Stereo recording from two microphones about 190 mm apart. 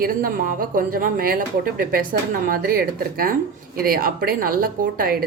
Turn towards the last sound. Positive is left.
turn(degrees=-50)  # may be behind; listen again after turning